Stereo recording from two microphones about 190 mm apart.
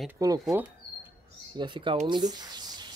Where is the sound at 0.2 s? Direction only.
20° right (ahead or behind).